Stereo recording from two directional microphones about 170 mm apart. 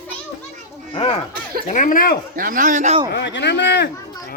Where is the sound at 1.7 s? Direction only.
50° left (ahead or behind).